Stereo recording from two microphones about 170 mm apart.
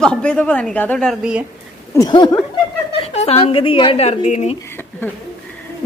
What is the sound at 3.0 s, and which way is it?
Speech, 40° left (ahead or behind).